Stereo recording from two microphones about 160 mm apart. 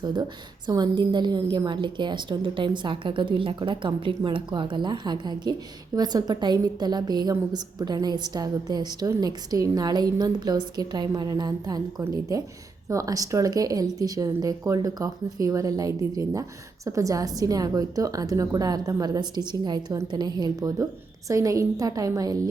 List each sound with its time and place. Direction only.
0.0 s speech: 25° right (ahead or behind)